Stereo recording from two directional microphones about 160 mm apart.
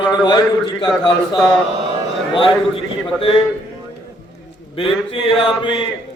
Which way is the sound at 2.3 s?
30° left (ahead or behind).